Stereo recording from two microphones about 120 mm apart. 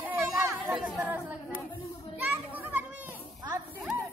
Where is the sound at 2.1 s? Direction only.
15° right (ahead or behind).